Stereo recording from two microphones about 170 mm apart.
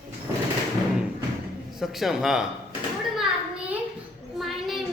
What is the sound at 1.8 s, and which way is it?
Speech, centre (ahead or behind).